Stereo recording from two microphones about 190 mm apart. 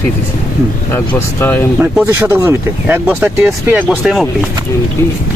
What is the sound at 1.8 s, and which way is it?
Speech, 10° right (ahead or behind).